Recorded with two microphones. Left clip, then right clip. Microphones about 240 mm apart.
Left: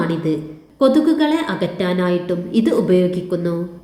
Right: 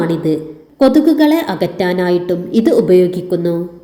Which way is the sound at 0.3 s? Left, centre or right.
Centre.